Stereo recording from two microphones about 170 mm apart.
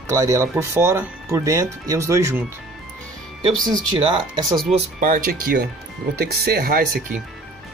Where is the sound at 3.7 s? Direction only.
25° right (ahead or behind).